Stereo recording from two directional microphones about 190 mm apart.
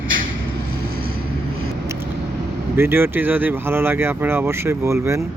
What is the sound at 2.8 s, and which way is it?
Speech, 10° right (ahead or behind).